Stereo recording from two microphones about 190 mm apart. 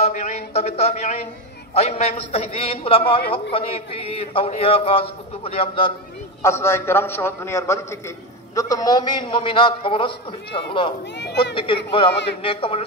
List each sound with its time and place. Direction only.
0.0 s a sound: 35° left (ahead or behind)
1.7 s a man's voice: 35° left (ahead or behind)
6.4 s a man's voice: 15° left (ahead or behind)
11.1 s speech: 65° left (ahead or behind)
11.5 s a man's voice: 25° left (ahead or behind)